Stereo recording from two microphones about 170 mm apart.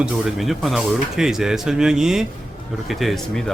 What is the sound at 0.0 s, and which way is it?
Speech, centre (ahead or behind).